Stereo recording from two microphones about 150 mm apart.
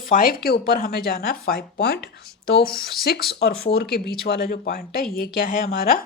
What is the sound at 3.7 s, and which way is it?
Speech, 90° left.